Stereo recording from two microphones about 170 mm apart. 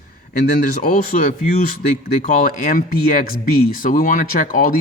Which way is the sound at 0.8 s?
55° left (ahead or behind).